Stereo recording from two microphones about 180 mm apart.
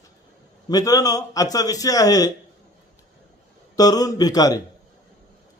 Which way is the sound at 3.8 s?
20° left (ahead or behind).